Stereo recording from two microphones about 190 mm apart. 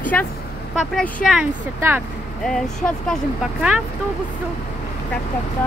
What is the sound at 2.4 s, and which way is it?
Speech, 5° left (ahead or behind).